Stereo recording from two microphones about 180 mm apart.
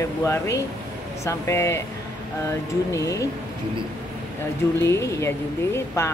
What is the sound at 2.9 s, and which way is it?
Speech, 20° left (ahead or behind).